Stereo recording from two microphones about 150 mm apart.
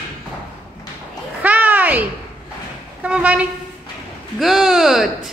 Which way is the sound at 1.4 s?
10° right (ahead or behind).